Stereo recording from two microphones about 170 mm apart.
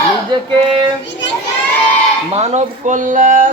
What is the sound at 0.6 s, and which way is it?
Child singing, 30° right (ahead or behind).